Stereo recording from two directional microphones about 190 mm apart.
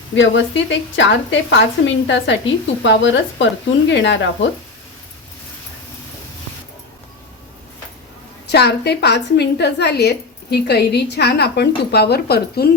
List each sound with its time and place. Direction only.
0.2 s a woman's voice: 75° left (ahead or behind)
8.4 s a woman's voice: 60° left (ahead or behind)